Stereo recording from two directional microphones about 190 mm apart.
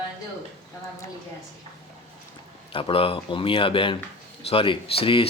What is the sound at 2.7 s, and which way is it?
Speech, 30° left (ahead or behind).